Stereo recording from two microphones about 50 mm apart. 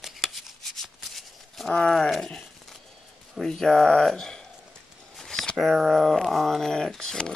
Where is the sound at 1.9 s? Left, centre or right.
Centre.